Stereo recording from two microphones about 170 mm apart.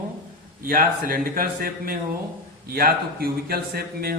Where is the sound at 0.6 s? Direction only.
60° right (ahead or behind).